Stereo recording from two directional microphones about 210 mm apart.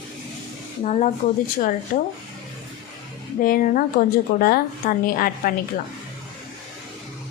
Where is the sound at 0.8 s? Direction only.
35° left (ahead or behind).